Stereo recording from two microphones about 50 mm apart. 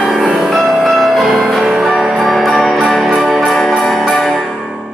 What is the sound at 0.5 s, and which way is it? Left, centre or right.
Music, centre.